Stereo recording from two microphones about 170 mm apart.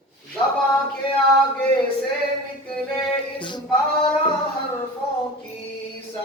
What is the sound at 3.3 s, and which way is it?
Music, 30° left (ahead or behind).